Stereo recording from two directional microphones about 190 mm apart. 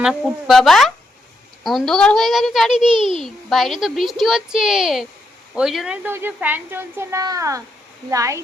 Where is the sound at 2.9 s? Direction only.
25° right (ahead or behind).